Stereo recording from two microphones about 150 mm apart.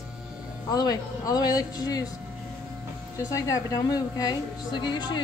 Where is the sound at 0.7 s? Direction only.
25° left (ahead or behind).